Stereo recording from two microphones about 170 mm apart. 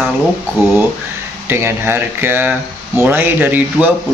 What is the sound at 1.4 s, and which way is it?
Speech, 15° right (ahead or behind).